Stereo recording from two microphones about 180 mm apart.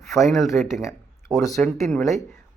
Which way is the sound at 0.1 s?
Centre (ahead or behind).